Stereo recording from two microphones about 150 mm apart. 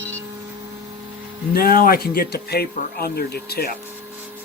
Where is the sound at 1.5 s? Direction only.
90° left.